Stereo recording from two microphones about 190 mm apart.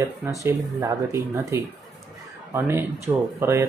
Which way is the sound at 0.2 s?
15° right (ahead or behind).